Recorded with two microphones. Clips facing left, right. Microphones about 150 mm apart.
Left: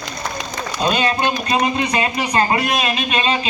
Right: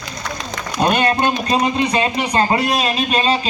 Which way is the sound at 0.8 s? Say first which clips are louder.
Right 3 dB; 55° right (ahead or behind).